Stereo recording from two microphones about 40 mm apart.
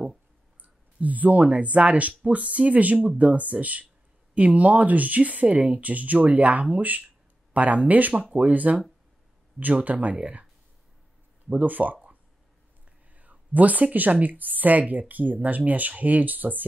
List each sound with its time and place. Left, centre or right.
0.6 s speech: right
11.5 s speech: right